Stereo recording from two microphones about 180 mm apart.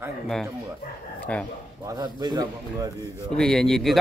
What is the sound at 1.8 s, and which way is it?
Speech, 20° right (ahead or behind).